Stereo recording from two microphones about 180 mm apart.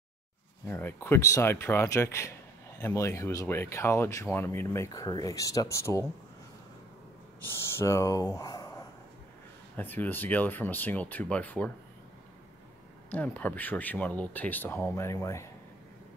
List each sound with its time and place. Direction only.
0.7 s speech: 10° left (ahead or behind)
7.4 s speech: 15° left (ahead or behind)
9.8 s speech: 10° left (ahead or behind)
13.1 s speech: 10° left (ahead or behind)